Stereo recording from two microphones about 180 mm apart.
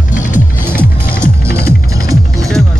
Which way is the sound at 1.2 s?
15° right (ahead or behind).